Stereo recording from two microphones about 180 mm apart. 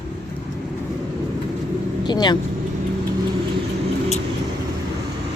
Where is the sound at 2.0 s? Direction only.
25° left (ahead or behind).